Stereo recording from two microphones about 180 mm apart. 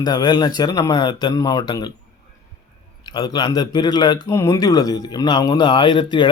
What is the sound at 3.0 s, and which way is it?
Speech, 25° left (ahead or behind).